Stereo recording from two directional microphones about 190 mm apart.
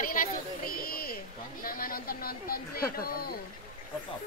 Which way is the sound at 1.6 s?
50° left (ahead or behind).